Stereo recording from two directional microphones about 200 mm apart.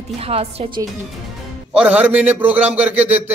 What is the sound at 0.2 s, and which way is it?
Speech, 30° right (ahead or behind).